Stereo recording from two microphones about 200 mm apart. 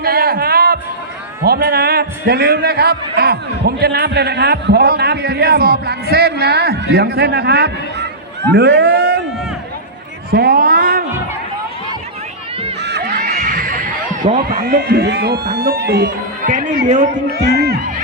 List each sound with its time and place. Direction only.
0.0 s music: 50° right (ahead or behind)
1.5 s a man's voice: 50° right (ahead or behind)
10.3 s a man's voice: 50° right (ahead or behind)
12.8 s crowd: 55° right (ahead or behind)
13.3 s heart sounds: 40° right (ahead or behind)
14.6 s a man's voice: 55° right (ahead or behind)
16.5 s a man's voice: 40° right (ahead or behind)